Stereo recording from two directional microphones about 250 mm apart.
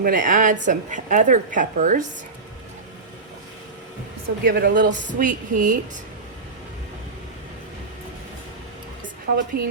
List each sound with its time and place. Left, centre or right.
0.0 s a woman's voice: right
4.4 s a woman's voice: right
9.3 s a woman's voice: right